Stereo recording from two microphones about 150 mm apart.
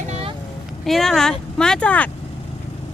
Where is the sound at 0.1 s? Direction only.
40° right (ahead or behind).